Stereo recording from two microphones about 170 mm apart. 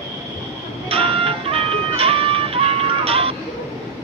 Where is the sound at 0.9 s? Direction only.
35° right (ahead or behind).